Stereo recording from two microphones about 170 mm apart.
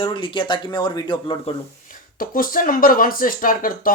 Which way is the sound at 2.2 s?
55° left (ahead or behind).